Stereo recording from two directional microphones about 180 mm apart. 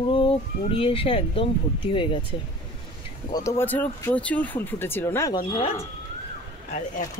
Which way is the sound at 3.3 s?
15° left (ahead or behind).